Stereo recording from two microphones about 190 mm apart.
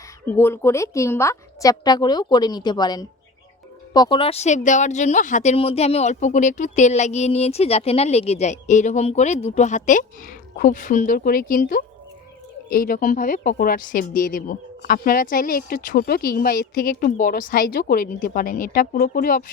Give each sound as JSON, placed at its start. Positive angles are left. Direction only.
{"t": 0.3, "sound": "a woman's voice", "side_deg": 15}